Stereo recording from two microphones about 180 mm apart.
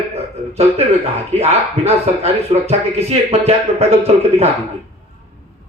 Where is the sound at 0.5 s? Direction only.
35° right (ahead or behind).